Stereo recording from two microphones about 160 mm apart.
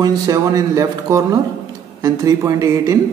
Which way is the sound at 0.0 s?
25° right (ahead or behind).